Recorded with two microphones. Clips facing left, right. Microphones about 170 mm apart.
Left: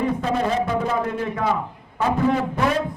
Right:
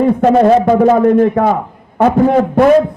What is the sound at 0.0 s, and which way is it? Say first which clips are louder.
A man's voice: right 13 dB; 60° right (ahead or behind).